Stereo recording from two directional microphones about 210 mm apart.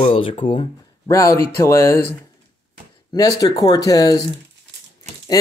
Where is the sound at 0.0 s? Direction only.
25° left (ahead or behind).